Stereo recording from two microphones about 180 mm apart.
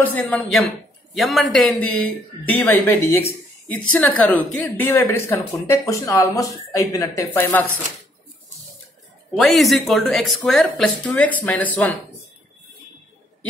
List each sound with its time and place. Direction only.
0.0 s speech: 10° left (ahead or behind)
9.3 s speech: centre (ahead or behind)